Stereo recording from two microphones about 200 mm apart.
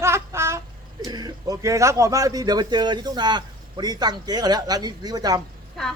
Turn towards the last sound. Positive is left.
turn(degrees=0)  # may be behind; listen again after turning